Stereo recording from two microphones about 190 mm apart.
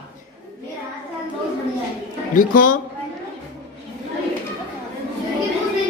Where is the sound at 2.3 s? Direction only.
45° left (ahead or behind).